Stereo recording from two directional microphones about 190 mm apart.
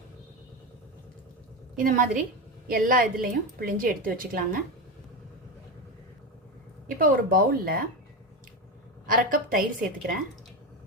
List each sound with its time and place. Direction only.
1.7 s a woman's voice: 45° right (ahead or behind)
6.8 s a woman's voice: 50° right (ahead or behind)
9.0 s a woman's voice: 45° right (ahead or behind)